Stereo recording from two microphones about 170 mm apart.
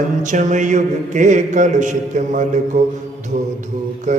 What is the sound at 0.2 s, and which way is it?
Mantra, 45° right (ahead or behind).